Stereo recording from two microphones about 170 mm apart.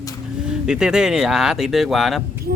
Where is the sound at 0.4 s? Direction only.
5° right (ahead or behind).